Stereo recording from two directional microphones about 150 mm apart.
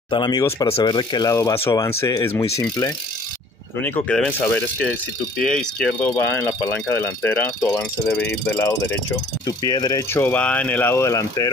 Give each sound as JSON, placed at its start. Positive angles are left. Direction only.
{"t": 0.1, "sound": "speech", "side_deg": 30}
{"t": 0.7, "sound": "speech", "side_deg": 35}
{"t": 3.8, "sound": "speech", "side_deg": 10}
{"t": 9.5, "sound": "speech", "side_deg": 30}
{"t": 10.1, "sound": "speech", "side_deg": 10}